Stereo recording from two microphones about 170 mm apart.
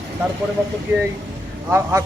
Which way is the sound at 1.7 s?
15° right (ahead or behind).